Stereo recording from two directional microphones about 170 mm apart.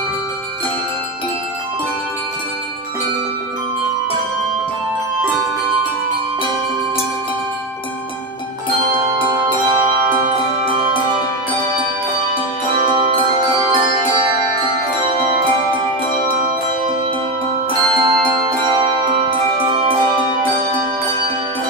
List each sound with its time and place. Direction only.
9.0 s music: 25° right (ahead or behind)
13.6 s music: 25° right (ahead or behind)
17.9 s music: 25° right (ahead or behind)